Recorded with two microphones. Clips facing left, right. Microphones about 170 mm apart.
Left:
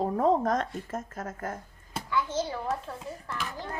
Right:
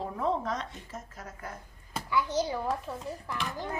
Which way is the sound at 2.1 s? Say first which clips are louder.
Right 1 dB; 15° right (ahead or behind).